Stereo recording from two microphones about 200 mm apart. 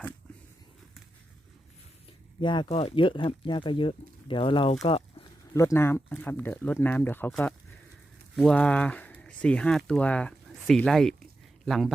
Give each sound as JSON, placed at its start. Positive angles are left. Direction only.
{"t": 2.4, "sound": "speech", "side_deg": 25}
{"t": 5.5, "sound": "speech", "side_deg": 15}